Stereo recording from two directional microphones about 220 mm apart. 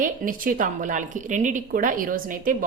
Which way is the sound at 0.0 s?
40° right (ahead or behind).